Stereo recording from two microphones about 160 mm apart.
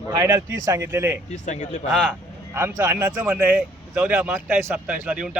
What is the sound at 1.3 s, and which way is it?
Speech, 50° left (ahead or behind).